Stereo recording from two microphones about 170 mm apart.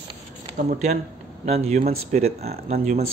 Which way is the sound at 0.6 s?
50° right (ahead or behind).